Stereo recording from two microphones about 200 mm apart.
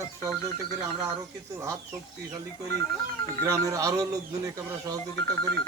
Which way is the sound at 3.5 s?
15° right (ahead or behind).